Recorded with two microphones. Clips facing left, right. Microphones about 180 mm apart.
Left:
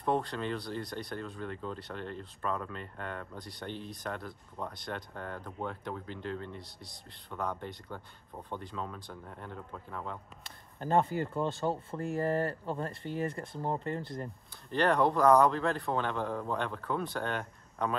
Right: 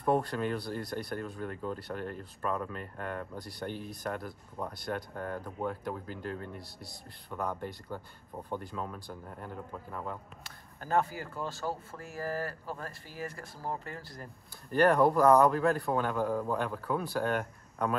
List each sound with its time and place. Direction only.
0.0 s speech: 5° right (ahead or behind)
10.8 s speech: 25° left (ahead or behind)
14.7 s speech: 10° right (ahead or behind)